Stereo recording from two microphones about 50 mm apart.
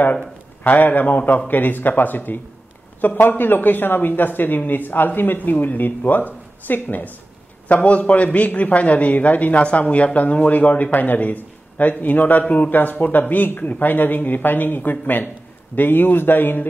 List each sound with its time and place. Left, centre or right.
0.7 s a man's voice: left
7.6 s a man's voice: left
12.4 s a man's voice: left